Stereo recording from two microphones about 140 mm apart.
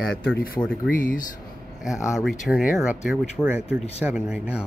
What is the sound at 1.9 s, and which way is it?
Speech, 20° left (ahead or behind).